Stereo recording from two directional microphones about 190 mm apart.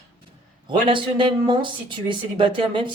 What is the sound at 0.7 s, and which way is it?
Speech, 25° right (ahead or behind).